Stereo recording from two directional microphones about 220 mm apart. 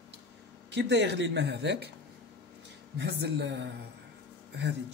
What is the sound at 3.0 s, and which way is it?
Speech, 50° right (ahead or behind).